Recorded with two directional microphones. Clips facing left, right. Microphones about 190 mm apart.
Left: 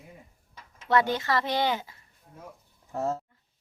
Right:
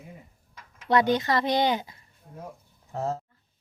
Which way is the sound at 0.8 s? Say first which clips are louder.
Right 2 dB; 15° right (ahead or behind).